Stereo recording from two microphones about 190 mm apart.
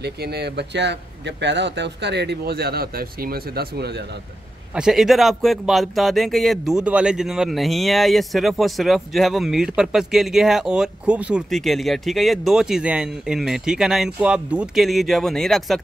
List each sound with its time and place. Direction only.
0.0 s speech: 60° right (ahead or behind)
4.7 s speech: 5° right (ahead or behind)